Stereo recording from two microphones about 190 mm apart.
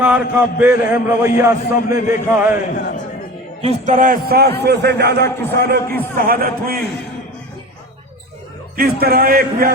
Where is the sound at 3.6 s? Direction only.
35° right (ahead or behind).